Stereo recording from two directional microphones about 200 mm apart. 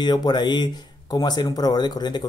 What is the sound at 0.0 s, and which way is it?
Speech, 20° left (ahead or behind).